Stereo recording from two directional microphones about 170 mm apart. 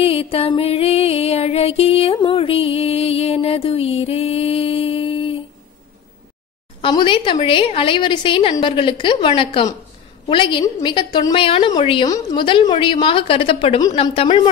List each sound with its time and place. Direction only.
0.0 s music: 35° left (ahead or behind)
6.8 s a woman's voice: 25° left (ahead or behind)